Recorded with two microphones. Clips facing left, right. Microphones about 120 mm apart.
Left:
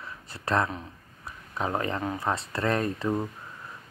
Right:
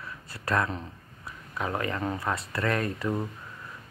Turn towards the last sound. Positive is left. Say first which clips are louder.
# left 2 dB
turn(degrees=20)  # may be behind; listen again after turning